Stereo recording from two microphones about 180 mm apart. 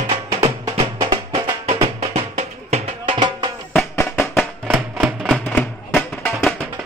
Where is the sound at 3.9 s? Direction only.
15° left (ahead or behind).